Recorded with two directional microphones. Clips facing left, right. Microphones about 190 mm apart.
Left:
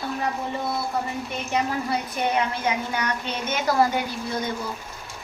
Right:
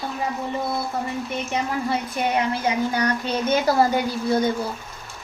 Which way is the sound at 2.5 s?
35° right (ahead or behind).